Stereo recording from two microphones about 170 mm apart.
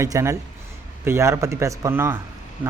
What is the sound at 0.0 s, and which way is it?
Speech, 15° right (ahead or behind).